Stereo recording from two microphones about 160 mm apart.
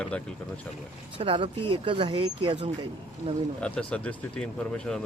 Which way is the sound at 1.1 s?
35° right (ahead or behind).